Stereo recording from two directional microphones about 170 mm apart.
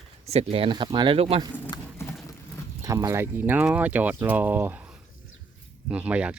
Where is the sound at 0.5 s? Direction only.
30° right (ahead or behind).